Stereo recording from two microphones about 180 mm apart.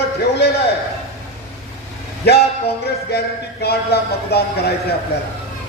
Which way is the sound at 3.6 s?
65° left (ahead or behind).